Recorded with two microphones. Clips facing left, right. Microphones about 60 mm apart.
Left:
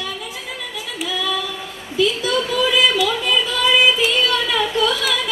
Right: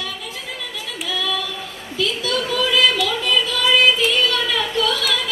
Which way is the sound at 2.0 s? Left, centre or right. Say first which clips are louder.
Left 4 dB; centre.